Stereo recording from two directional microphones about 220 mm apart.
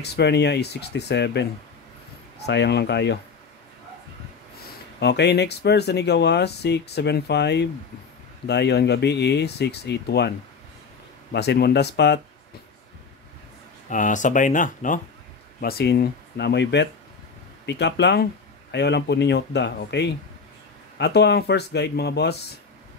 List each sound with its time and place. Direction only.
0.0 s speech: 50° left (ahead or behind)
5.0 s speech: 50° left (ahead or behind)
11.3 s speech: 50° left (ahead or behind)
13.8 s speech: 35° left (ahead or behind)